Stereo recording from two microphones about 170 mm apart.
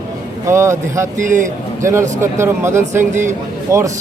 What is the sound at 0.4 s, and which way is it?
Speech, 15° right (ahead or behind).